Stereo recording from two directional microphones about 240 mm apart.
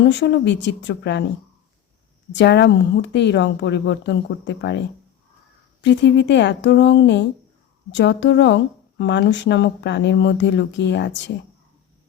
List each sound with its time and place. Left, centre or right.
0.0 s speech: left
2.3 s speech: left
5.8 s speech: left